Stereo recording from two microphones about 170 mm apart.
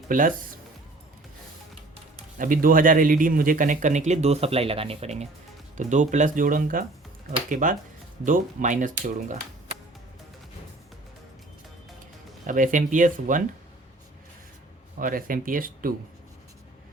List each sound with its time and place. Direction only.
0.1 s speech: 50° right (ahead or behind)
2.4 s speech: 55° right (ahead or behind)
12.5 s speech: 50° right (ahead or behind)
14.9 s speech: 55° right (ahead or behind)